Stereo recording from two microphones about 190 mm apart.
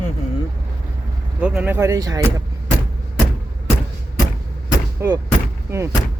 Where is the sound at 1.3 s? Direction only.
5° right (ahead or behind).